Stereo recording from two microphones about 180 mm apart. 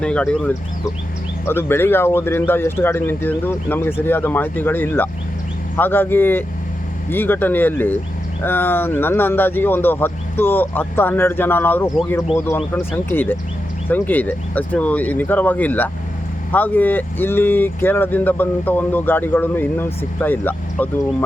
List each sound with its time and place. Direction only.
0.0 s speech: 5° left (ahead or behind)